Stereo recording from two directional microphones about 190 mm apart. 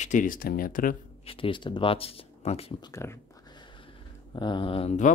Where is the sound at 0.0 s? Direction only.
45° left (ahead or behind).